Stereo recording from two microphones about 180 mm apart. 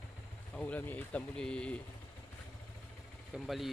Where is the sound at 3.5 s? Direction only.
Centre (ahead or behind).